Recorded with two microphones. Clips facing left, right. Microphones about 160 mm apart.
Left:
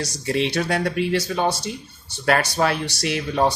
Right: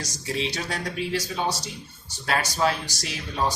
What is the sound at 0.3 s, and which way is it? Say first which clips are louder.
Speech: left 7 dB; 65° left (ahead or behind).